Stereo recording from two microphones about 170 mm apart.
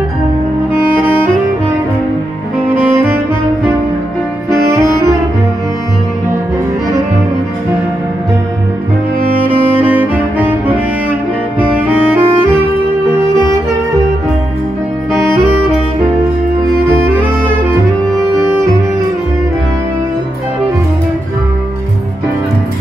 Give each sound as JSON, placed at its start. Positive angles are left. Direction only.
{"t": 4.5, "sound": "saxophone", "side_deg": -15}
{"t": 9.8, "sound": "music", "side_deg": -10}
{"t": 16.9, "sound": "music", "side_deg": -15}